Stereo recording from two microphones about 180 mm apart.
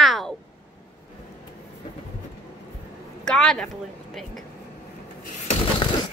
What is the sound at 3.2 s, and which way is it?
A woman's voice, 5° left (ahead or behind).